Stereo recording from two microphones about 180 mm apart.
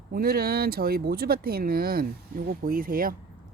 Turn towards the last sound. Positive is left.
turn(degrees=-50)  # may be behind; listen again after turning